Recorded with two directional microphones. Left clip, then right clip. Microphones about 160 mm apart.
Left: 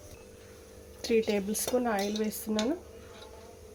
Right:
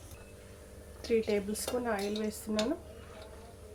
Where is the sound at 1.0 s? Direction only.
40° left (ahead or behind).